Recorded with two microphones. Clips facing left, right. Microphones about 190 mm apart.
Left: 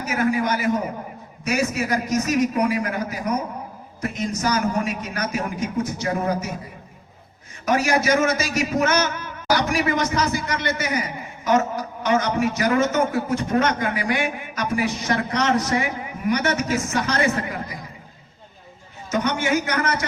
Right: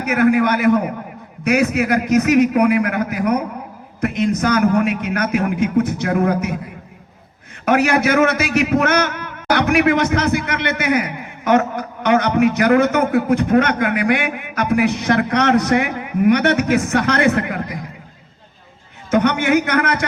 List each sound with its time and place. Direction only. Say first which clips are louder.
0.0 s a man's voice: right 7 dB; 60° right (ahead or behind)
7.6 s a man's voice: right 5 dB; 60° right (ahead or behind)
19.1 s a man's voice: right 6 dB; 60° right (ahead or behind)